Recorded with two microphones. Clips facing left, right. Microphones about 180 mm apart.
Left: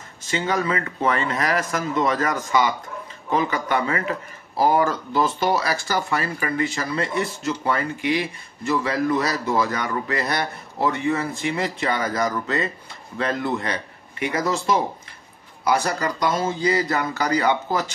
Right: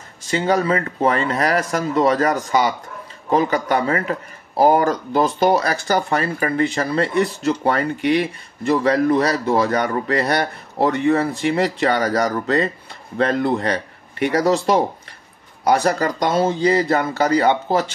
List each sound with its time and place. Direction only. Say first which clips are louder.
0.3 s speech: right 5 dB; 35° right (ahead or behind)
5.9 s speech: right 4 dB; 35° right (ahead or behind)
15.6 s speech: right 5 dB; 40° right (ahead or behind)